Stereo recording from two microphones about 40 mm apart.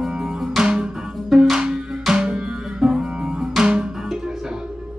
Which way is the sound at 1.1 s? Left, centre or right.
Centre.